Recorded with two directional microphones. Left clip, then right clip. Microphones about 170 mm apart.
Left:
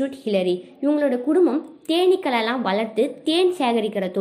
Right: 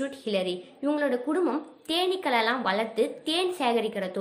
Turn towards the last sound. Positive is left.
turn(degrees=15)  # may be behind; listen again after turning